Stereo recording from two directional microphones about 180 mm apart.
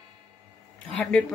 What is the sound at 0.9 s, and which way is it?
Speech, 5° left (ahead or behind).